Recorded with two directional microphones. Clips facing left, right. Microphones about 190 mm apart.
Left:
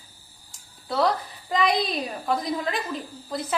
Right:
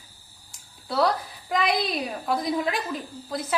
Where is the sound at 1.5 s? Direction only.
Centre (ahead or behind).